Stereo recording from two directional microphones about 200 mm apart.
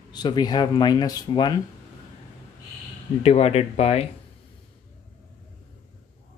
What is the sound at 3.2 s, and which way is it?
Speech, 30° left (ahead or behind).